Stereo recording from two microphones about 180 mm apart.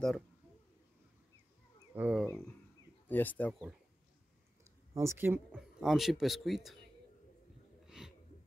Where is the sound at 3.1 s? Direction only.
10° left (ahead or behind).